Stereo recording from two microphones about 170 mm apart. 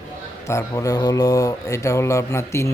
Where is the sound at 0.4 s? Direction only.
15° left (ahead or behind).